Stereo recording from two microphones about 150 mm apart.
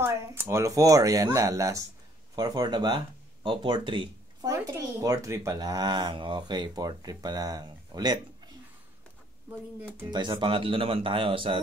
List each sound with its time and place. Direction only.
0.0 s speech: 15° right (ahead or behind); by 4.5 s 35° right (ahead or behind)
4.5 s speech: 20° right (ahead or behind)
10.1 s speech: 30° right (ahead or behind)